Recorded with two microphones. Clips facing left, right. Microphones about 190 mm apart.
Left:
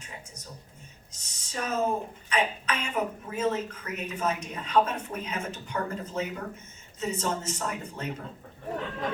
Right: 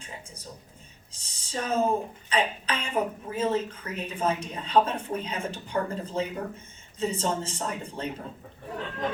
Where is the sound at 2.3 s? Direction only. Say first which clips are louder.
Right 1 dB; 30° right (ahead or behind).